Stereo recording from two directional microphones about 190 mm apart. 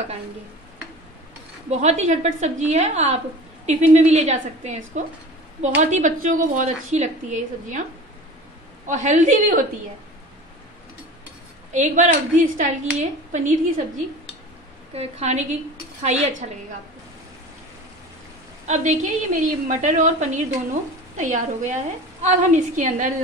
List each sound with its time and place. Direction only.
1.7 s a woman's voice: 35° right (ahead or behind)
8.8 s a woman's voice: 40° right (ahead or behind)
11.7 s a woman's voice: 40° right (ahead or behind)
15.0 s a woman's voice: 35° right (ahead or behind)
18.7 s a woman's voice: 40° right (ahead or behind)